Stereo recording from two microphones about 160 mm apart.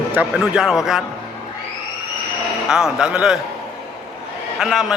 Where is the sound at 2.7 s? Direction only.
5° right (ahead or behind).